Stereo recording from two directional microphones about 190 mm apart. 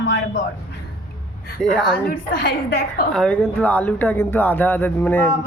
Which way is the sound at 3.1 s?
5° left (ahead or behind).